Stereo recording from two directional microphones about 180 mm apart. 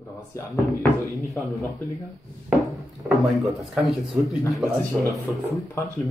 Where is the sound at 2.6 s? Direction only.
Centre (ahead or behind).